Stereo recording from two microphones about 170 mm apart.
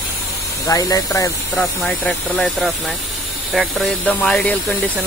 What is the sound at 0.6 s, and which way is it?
Speech, 20° left (ahead or behind).